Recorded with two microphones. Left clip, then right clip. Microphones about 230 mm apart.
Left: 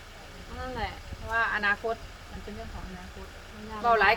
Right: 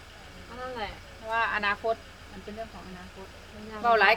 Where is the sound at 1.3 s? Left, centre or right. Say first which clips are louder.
Left 1 dB; centre.